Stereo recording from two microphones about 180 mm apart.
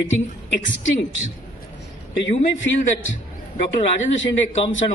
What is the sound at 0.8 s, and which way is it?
Speech, 90° left.